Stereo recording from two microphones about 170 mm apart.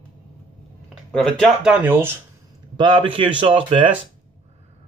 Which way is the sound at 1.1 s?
5° left (ahead or behind).